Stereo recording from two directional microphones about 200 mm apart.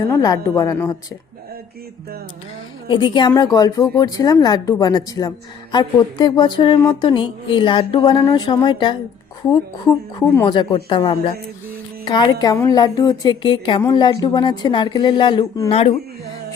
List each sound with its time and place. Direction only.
0.1 s a woman's voice: 15° left (ahead or behind)
2.8 s speech: 25° left (ahead or behind)
15.7 s speech: 30° left (ahead or behind)